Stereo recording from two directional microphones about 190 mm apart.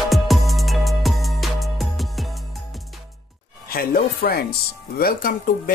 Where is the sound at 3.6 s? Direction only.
50° left (ahead or behind).